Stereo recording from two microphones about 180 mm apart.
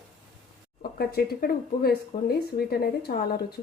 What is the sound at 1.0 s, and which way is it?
Speech, 60° left (ahead or behind).